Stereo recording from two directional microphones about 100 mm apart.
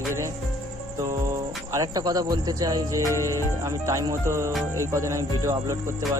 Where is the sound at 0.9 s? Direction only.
30° right (ahead or behind).